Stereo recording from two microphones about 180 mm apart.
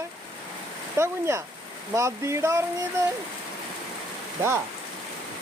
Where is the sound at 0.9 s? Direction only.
15° right (ahead or behind).